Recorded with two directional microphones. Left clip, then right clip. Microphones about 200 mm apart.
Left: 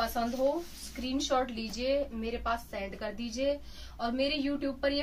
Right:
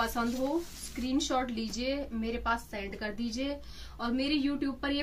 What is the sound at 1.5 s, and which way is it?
A woman's voice, 25° left (ahead or behind).